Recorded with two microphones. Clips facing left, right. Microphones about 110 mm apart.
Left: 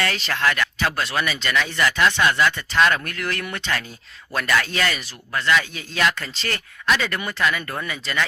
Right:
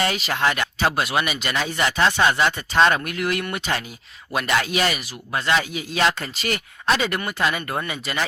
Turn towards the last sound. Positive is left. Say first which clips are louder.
# right 1 dB
turn(degrees=-20)  # may be behind; listen again after turning